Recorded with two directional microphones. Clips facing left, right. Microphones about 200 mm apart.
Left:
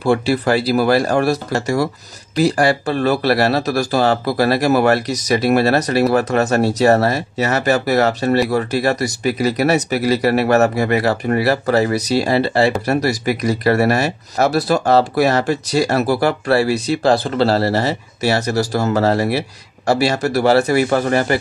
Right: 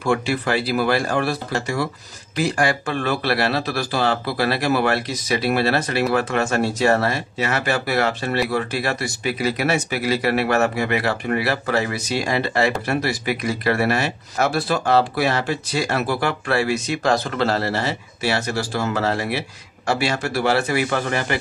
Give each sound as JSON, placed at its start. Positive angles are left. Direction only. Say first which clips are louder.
{"t": 0.0, "sound": "speech", "louder": "left 5 dB", "side_deg": 35}